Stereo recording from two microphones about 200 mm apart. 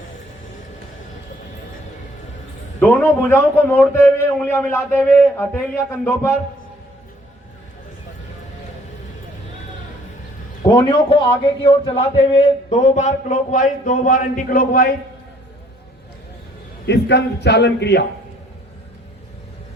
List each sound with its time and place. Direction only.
2.8 s a man's voice: 10° left (ahead or behind)
10.6 s a man's voice: 20° left (ahead or behind); by 14.9 s 45° left (ahead or behind)
16.8 s a man's voice: 60° left (ahead or behind)